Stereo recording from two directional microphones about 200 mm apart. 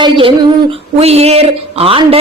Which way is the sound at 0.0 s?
25° right (ahead or behind).